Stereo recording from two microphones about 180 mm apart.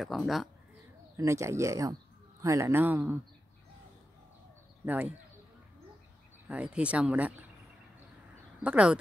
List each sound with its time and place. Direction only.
0.0 s speech: centre (ahead or behind)
1.1 s speech: 15° right (ahead or behind)
4.8 s speech: 10° right (ahead or behind)
6.5 s speech: 5° right (ahead or behind)
8.6 s speech: 5° right (ahead or behind)